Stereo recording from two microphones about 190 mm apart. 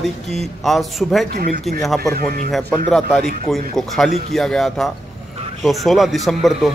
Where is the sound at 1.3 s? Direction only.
50° right (ahead or behind).